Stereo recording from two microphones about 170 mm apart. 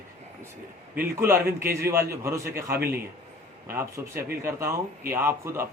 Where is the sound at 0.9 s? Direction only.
15° right (ahead or behind).